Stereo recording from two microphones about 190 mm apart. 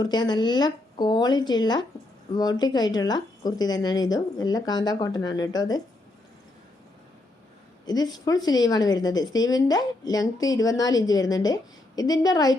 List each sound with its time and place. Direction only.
0.0 s a woman's voice: 20° left (ahead or behind)
7.9 s a woman's voice: 20° left (ahead or behind)